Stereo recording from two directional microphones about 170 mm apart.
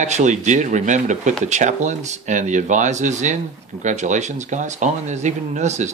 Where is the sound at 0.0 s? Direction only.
45° right (ahead or behind).